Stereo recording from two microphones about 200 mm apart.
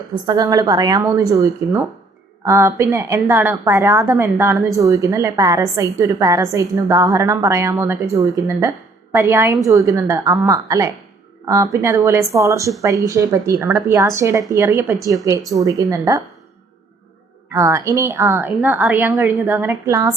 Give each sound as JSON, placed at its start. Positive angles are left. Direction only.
{"t": 0.3, "sound": "a woman's voice", "side_deg": -20}
{"t": 17.5, "sound": "a woman's voice", "side_deg": -15}